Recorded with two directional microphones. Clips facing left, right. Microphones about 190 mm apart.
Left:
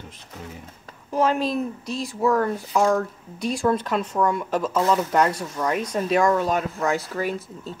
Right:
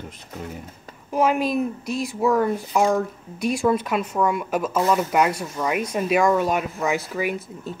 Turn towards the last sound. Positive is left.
turn(degrees=-10)  # may be behind; listen again after turning